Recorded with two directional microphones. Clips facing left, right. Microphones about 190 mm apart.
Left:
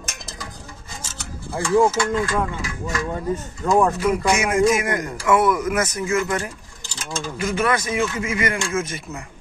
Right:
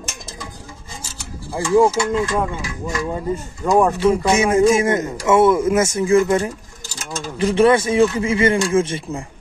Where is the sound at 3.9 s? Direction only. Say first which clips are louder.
Right 4 dB; 30° right (ahead or behind).